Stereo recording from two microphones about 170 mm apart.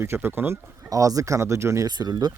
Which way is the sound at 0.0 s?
15° right (ahead or behind).